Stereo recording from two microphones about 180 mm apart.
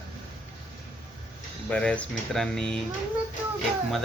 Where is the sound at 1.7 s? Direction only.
5° left (ahead or behind).